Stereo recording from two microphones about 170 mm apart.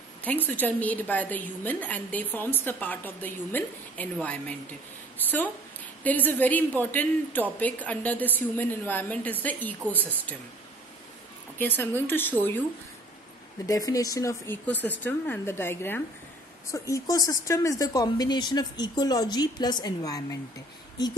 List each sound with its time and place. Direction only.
0.2 s a woman's voice: 10° left (ahead or behind)
11.5 s a woman's voice: 10° left (ahead or behind)
13.7 s a woman's voice: 20° left (ahead or behind)